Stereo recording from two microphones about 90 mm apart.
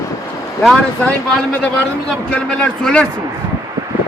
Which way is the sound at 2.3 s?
10° left (ahead or behind).